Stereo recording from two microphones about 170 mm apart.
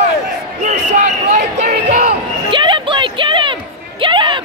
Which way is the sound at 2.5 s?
30° right (ahead or behind).